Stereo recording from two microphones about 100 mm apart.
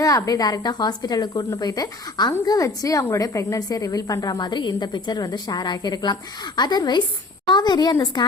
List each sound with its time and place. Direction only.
0.0 s a woman's voice: 35° left (ahead or behind)